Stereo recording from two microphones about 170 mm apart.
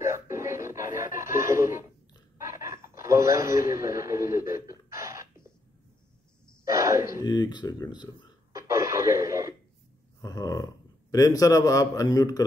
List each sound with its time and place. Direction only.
0.0 s music: 15° right (ahead or behind)
1.1 s a sound: 15° right (ahead or behind)
6.6 s speech: 15° right (ahead or behind)
7.2 s a man's voice: 25° left (ahead or behind)
8.5 s radio: 15° right (ahead or behind)
10.2 s a man's voice: 25° left (ahead or behind)